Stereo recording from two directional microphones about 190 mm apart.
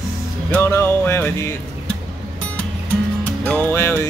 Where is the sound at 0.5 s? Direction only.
10° left (ahead or behind).